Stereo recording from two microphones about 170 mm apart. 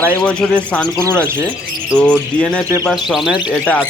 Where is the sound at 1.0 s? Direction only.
15° right (ahead or behind).